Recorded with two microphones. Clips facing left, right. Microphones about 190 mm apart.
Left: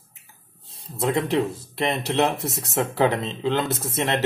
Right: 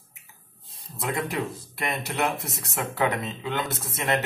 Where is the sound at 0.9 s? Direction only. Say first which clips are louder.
Left 7 dB; 25° left (ahead or behind).